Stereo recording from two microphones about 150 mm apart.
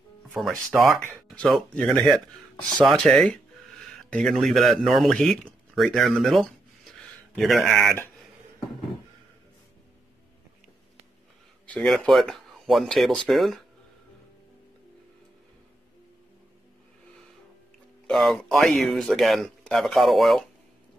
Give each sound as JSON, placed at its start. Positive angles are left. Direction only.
{"t": 0.3, "sound": "speech", "side_deg": -5}
{"t": 11.6, "sound": "speech", "side_deg": 5}
{"t": 18.0, "sound": "speech", "side_deg": 0}